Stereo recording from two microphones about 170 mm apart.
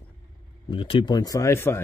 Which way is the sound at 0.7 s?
30° left (ahead or behind).